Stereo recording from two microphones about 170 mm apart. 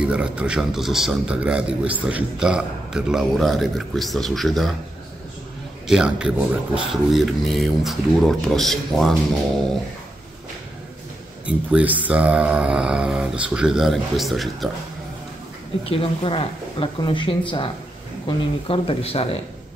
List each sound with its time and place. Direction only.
0.0 s a man's voice: 5° right (ahead or behind)
5.9 s a man's voice: 5° right (ahead or behind)
11.4 s a man's voice: 10° right (ahead or behind)
15.8 s speech: 30° left (ahead or behind)